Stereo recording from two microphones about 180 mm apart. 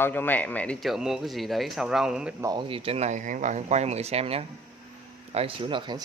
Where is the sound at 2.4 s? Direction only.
25° right (ahead or behind).